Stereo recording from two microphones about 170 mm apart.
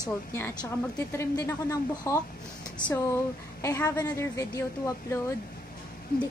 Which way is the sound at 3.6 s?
20° left (ahead or behind).